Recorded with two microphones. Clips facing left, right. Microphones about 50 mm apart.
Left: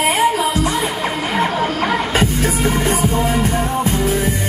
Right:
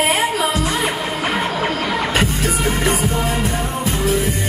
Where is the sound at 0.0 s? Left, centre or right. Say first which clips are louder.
Left 2 dB; right.